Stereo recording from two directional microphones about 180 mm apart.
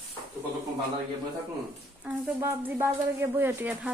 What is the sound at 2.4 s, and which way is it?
Speech, 15° right (ahead or behind).